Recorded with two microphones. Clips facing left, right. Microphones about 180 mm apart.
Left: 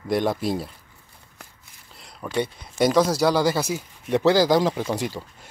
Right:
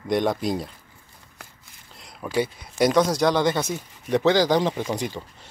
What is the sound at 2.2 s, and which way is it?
Speech, 5° right (ahead or behind).